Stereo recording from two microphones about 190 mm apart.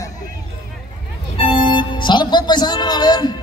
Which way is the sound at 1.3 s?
25° left (ahead or behind).